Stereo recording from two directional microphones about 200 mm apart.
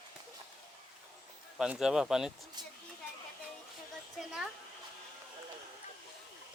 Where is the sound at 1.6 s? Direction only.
5° right (ahead or behind).